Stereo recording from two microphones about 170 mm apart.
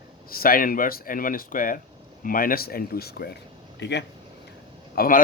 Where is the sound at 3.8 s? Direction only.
90° left.